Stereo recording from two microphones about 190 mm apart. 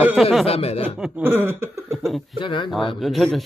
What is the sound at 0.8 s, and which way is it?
Speech, 5° right (ahead or behind).